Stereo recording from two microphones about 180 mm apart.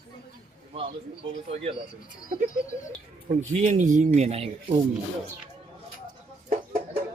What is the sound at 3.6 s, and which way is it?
Speech, 40° right (ahead or behind).